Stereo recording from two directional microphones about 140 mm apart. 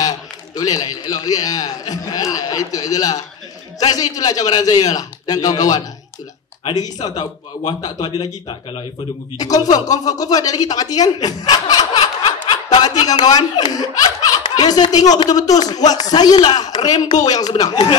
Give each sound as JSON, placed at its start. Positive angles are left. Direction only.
{"t": 0.6, "sound": "speech", "side_deg": 25}
{"t": 9.4, "sound": "speech", "side_deg": 30}
{"t": 14.4, "sound": "a sound", "side_deg": 30}
{"t": 15.2, "sound": "speech", "side_deg": 25}